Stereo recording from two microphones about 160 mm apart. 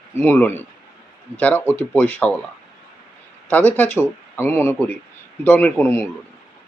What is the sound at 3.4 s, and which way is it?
Speech, 10° left (ahead or behind).